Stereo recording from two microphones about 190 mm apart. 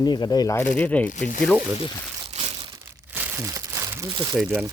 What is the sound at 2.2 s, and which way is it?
Crumpling, 30° right (ahead or behind).